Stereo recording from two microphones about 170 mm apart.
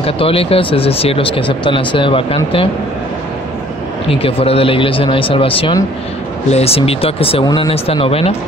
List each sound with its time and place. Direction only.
0.0 s speech: 35° left (ahead or behind)
4.1 s speech: 35° left (ahead or behind)